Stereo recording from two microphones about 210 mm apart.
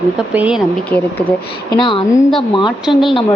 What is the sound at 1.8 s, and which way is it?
Speech, 25° left (ahead or behind).